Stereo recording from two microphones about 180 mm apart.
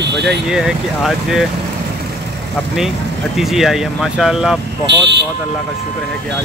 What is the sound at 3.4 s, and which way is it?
Speech, centre (ahead or behind).